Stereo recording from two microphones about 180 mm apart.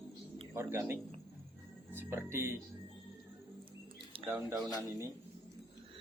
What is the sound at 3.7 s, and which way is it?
Mouse, 30° right (ahead or behind).